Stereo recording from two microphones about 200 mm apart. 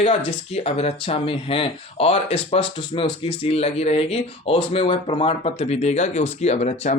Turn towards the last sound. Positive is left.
turn(degrees=40)  # may be behind; listen again after turning